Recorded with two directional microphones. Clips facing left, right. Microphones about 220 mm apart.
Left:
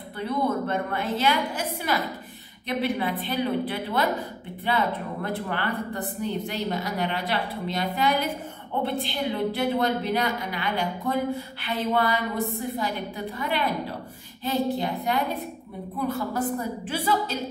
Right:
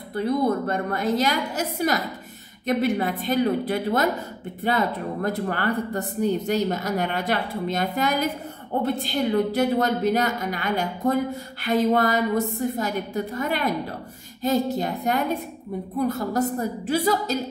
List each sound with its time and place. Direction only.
0.1 s a woman's voice: 40° right (ahead or behind)